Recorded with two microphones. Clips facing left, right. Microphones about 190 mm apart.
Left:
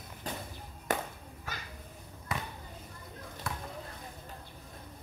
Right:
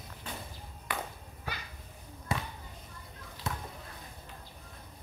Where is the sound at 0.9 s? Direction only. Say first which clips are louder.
Left 5 dB; 45° left (ahead or behind).